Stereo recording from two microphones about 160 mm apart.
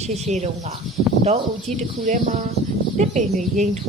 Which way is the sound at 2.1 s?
45° right (ahead or behind).